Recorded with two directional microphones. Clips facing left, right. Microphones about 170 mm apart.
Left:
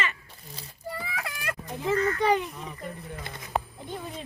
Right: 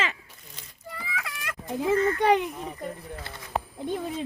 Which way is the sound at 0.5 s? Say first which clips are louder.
Left 5 dB; 35° left (ahead or behind).